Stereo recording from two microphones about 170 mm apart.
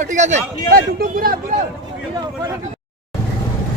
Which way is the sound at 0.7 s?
60° right (ahead or behind).